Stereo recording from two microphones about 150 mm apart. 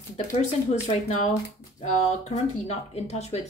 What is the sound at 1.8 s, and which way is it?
A woman's voice, 50° left (ahead or behind).